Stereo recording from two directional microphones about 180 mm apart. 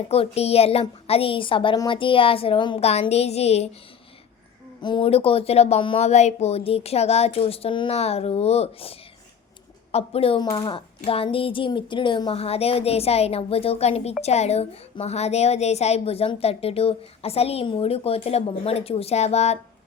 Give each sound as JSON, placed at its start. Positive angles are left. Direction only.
{"t": 0.1, "sound": "a woman's voice", "side_deg": 35}
{"t": 4.8, "sound": "a woman's voice", "side_deg": 25}
{"t": 10.4, "sound": "a woman's voice", "side_deg": 20}